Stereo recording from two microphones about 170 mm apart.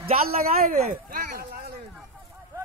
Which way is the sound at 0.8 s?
50° right (ahead or behind).